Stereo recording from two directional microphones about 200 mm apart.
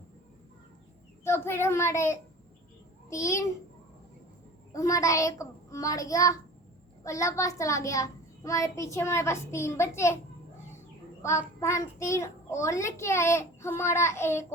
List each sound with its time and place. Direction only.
1.2 s a child's voice: 10° left (ahead or behind)
4.7 s a child's voice: 15° left (ahead or behind)
11.2 s a child's voice: 15° left (ahead or behind)